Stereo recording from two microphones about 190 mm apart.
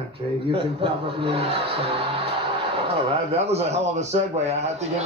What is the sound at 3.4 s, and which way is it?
Speech, 35° right (ahead or behind).